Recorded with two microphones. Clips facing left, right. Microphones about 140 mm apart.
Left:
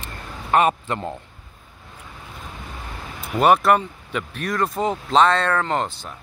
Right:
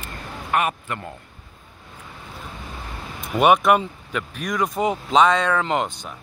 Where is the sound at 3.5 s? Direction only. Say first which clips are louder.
Left 1 dB; 10° right (ahead or behind).